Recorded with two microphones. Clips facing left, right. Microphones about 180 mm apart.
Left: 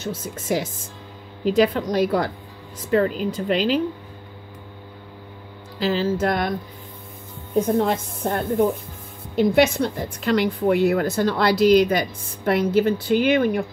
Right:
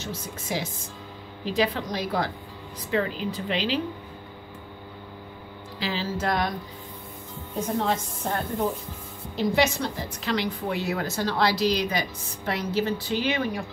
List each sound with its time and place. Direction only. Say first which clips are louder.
0.0 s a woman's voice: left 5 dB; 50° left (ahead or behind)
5.8 s a woman's voice: left 8 dB; 45° left (ahead or behind)
7.6 s a woman's voice: left 1 dB; 55° left (ahead or behind)